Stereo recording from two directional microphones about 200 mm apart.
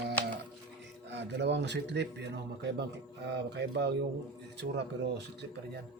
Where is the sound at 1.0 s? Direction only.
60° right (ahead or behind).